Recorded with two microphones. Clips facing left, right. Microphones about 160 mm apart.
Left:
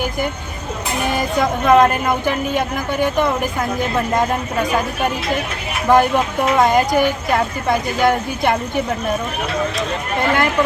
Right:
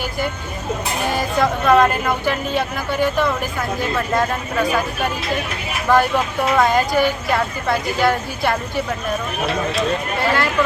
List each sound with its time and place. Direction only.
1.4 s speech: 20° left (ahead or behind)
5.9 s a woman's voice: 20° left (ahead or behind)